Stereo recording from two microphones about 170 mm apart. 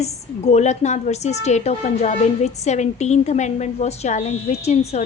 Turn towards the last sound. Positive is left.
turn(degrees=40)  # may be behind; listen again after turning